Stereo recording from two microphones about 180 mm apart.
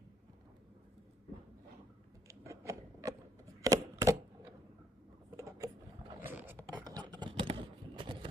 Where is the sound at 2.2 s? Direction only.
15° right (ahead or behind).